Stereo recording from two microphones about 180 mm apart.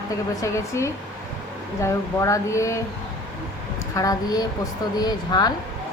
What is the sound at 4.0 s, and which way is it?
Speech, 20° left (ahead or behind).